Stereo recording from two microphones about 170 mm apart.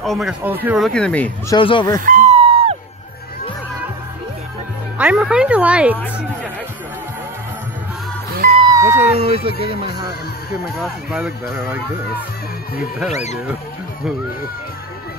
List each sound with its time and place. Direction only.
0.0 s speech: centre (ahead or behind)
1.5 s speech: 30° left (ahead or behind)
2.0 s music: 50° right (ahead or behind)
4.9 s speech: 5° right (ahead or behind)
8.5 s a sound: 20° right (ahead or behind)
9.1 s speech: 35° right (ahead or behind)
10.8 s speech: 5° right (ahead or behind)
13.1 s speech: 40° left (ahead or behind)